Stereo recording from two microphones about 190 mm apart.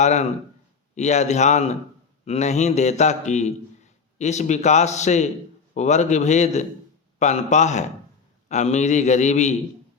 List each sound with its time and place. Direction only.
0.0 s a man's voice: 35° left (ahead or behind)